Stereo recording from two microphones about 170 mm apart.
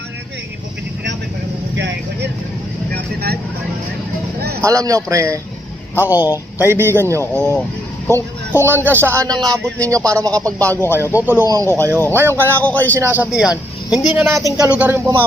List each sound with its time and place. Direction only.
1.7 s vehicle: 90° right
2.9 s vehicle: 65° right (ahead or behind)
4.4 s a sound: 65° right (ahead or behind)
4.6 s speech: 20° right (ahead or behind)
10.6 s a man's voice: 10° left (ahead or behind)
10.8 s speech: 15° right (ahead or behind)
12.6 s a man's voice: 10° left (ahead or behind)
13.0 s speech: 10° right (ahead or behind)